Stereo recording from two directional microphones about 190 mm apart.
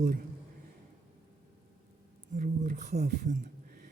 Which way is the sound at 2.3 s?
50° right (ahead or behind).